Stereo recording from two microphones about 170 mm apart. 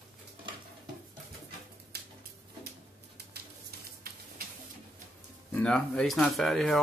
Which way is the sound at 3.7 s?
65° right (ahead or behind).